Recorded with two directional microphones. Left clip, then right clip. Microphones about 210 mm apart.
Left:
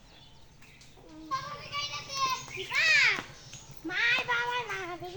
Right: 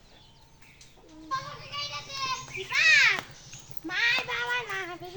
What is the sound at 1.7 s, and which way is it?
Child singing, 25° left (ahead or behind).